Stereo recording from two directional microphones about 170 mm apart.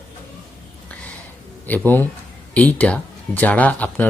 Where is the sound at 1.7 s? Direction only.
10° left (ahead or behind).